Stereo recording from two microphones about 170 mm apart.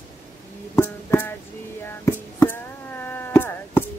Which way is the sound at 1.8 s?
15° left (ahead or behind).